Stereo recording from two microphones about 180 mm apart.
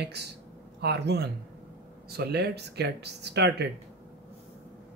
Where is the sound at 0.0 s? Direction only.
70° right (ahead or behind).